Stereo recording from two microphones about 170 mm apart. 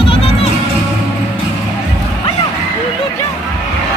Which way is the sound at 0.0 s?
30° left (ahead or behind).